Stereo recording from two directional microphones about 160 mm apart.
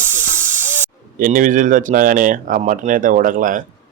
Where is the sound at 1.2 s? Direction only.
55° right (ahead or behind).